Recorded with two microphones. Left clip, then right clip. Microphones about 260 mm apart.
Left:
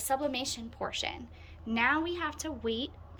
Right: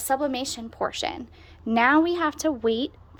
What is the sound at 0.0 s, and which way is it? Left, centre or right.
Speech, centre.